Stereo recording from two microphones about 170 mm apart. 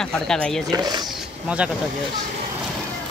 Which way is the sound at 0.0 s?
5° left (ahead or behind).